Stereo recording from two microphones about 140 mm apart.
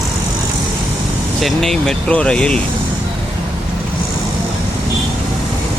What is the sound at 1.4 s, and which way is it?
Speech, centre (ahead or behind).